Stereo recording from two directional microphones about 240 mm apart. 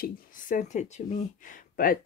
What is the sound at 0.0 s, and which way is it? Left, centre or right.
Speech, left.